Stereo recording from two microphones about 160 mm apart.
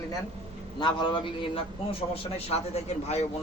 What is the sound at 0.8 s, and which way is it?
A man's voice, 30° left (ahead or behind).